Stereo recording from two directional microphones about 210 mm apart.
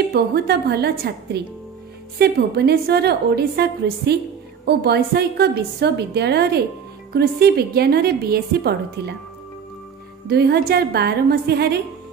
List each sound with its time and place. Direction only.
0.1 s a woman's voice: 50° right (ahead or behind)
10.2 s a woman's voice: 50° right (ahead or behind)